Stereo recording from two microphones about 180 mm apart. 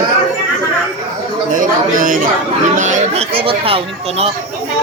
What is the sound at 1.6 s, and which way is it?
Chatter, 45° right (ahead or behind).